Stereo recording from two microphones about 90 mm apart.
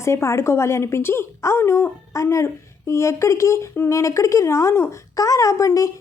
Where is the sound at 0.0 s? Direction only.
30° left (ahead or behind).